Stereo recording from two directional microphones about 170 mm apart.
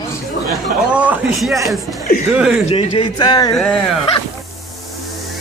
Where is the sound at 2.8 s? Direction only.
30° left (ahead or behind).